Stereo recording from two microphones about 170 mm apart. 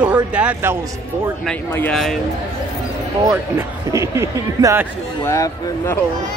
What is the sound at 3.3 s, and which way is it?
Speech, 15° right (ahead or behind).